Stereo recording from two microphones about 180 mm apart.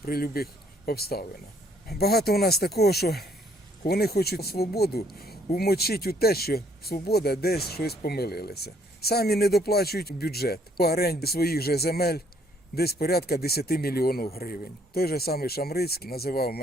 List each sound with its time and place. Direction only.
0.0 s speech: 55° left (ahead or behind)